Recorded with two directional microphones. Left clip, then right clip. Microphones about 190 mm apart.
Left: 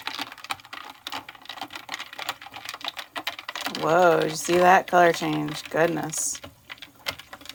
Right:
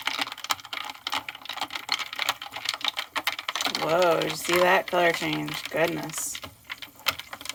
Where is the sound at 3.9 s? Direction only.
30° left (ahead or behind).